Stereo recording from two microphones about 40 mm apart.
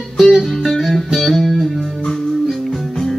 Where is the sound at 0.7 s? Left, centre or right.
Centre.